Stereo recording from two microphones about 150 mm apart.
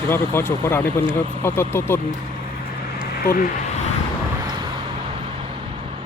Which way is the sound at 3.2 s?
75° left (ahead or behind).